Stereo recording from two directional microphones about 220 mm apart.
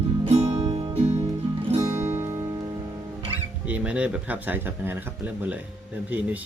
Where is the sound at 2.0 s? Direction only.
10° right (ahead or behind).